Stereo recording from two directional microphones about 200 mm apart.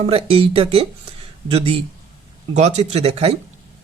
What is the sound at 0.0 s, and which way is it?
Speech, 30° right (ahead or behind).